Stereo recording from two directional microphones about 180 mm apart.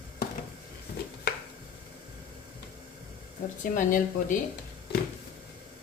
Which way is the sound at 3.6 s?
45° left (ahead or behind).